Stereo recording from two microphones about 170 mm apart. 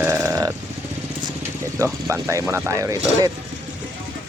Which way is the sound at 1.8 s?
15° right (ahead or behind).